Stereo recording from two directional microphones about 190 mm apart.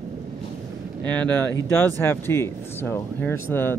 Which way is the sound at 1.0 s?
10° left (ahead or behind).